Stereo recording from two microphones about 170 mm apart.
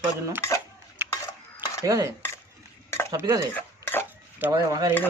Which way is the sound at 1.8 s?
20° right (ahead or behind).